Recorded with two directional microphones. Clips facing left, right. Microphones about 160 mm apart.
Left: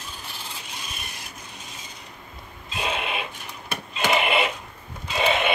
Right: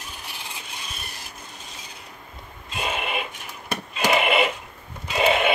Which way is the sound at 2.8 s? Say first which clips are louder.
Even; 5° right (ahead or behind).